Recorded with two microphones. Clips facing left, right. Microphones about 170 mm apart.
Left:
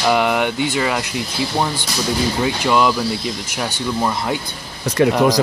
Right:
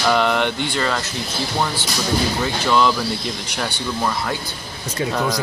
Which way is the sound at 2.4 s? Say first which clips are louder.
Left 3 dB; 10° left (ahead or behind).